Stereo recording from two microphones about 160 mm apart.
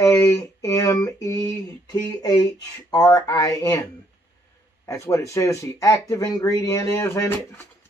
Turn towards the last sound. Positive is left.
turn(degrees=20)  # may be behind; listen again after turning